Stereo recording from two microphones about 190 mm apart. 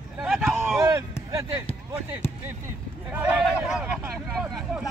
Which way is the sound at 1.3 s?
20° right (ahead or behind).